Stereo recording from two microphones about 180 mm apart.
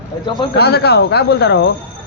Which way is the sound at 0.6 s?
65° left (ahead or behind).